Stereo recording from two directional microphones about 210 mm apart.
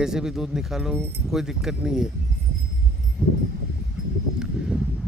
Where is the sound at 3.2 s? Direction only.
5° right (ahead or behind).